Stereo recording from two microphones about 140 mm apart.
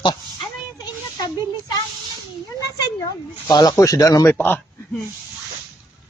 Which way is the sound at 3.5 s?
25° left (ahead or behind).